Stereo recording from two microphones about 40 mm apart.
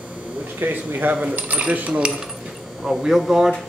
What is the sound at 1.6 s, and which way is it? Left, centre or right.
Coin, right.